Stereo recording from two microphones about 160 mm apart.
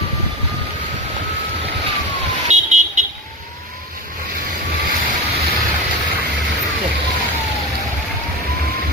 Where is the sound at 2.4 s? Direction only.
50° right (ahead or behind).